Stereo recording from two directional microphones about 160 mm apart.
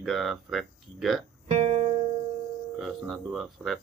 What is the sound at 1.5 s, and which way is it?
Music, 40° right (ahead or behind).